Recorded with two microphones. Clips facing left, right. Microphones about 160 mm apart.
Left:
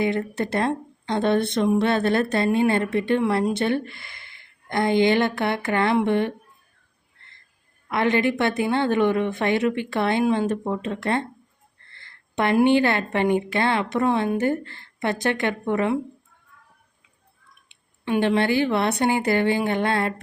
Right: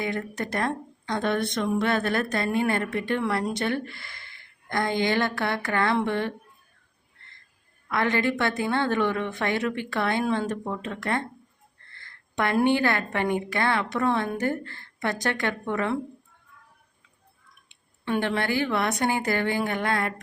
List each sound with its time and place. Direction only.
0.0 s a woman's voice: 25° left (ahead or behind)
7.9 s a woman's voice: 20° left (ahead or behind)
12.5 s a woman's voice: 20° left (ahead or behind)
17.7 s a woman's voice: 15° left (ahead or behind)